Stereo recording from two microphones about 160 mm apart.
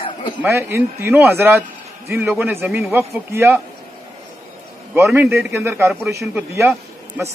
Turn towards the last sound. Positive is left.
turn(degrees=-15)  # may be behind; listen again after turning